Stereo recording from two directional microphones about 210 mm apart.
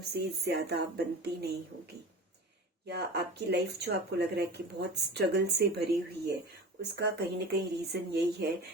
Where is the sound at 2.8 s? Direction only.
50° right (ahead or behind).